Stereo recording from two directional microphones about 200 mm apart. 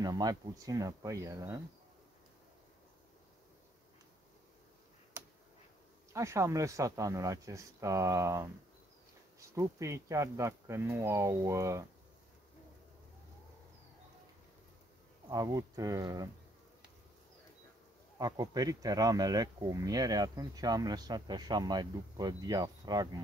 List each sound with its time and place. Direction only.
0.0 s speech: 20° right (ahead or behind)
5.2 s finger snapping: 10° right (ahead or behind)
6.1 s speech: 15° right (ahead or behind)
15.2 s speech: 20° right (ahead or behind)
18.2 s speech: 20° right (ahead or behind)